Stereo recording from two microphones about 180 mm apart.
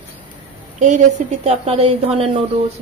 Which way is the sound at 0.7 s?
40° right (ahead or behind).